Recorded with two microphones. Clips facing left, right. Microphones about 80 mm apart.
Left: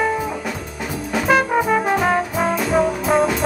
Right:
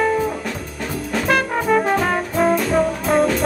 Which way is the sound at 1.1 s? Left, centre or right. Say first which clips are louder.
Left 3 dB; centre.